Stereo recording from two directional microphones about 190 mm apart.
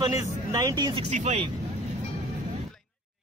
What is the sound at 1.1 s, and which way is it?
Speech, 40° right (ahead or behind).